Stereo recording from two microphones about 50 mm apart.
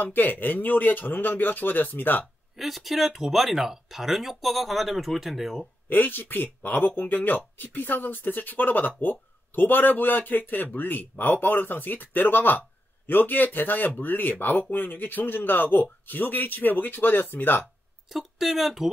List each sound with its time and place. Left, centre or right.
0.0 s a man's voice: left
2.5 s speech: centre
5.9 s a man's voice: left
18.0 s speech: centre